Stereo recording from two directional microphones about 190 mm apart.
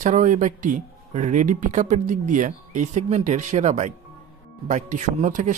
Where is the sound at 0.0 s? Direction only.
40° right (ahead or behind).